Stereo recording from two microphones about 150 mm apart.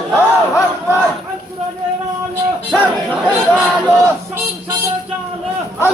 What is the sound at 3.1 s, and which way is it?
Speech, 5° right (ahead or behind).